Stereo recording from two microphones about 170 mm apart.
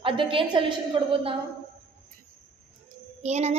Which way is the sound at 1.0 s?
30° right (ahead or behind).